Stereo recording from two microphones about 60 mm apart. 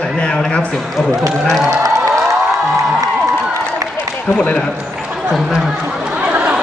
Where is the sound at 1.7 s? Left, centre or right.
Right.